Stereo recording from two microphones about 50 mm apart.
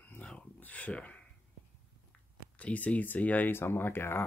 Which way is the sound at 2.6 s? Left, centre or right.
Left.